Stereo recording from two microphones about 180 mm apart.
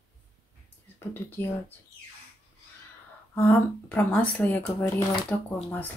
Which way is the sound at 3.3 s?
10° left (ahead or behind).